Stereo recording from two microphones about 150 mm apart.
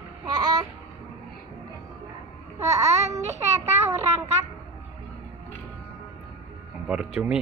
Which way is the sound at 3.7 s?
15° right (ahead or behind).